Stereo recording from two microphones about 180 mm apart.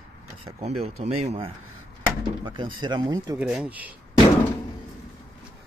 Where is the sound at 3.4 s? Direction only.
5° right (ahead or behind).